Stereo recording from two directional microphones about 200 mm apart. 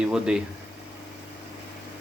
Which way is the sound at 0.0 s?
5° right (ahead or behind).